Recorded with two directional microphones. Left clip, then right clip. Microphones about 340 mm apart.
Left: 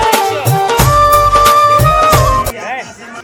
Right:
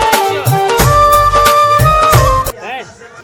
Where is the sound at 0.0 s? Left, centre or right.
Centre.